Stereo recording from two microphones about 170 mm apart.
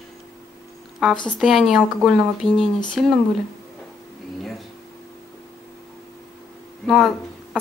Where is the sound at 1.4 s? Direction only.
Centre (ahead or behind).